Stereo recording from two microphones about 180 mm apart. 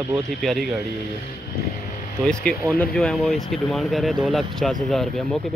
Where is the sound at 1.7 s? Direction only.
45° left (ahead or behind).